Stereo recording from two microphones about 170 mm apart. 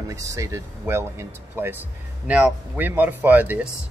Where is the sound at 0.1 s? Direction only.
15° right (ahead or behind).